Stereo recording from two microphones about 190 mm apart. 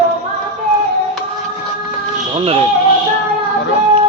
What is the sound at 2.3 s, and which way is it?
Speech, 30° right (ahead or behind).